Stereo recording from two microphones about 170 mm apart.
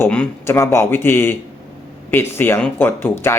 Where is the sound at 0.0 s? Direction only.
10° left (ahead or behind).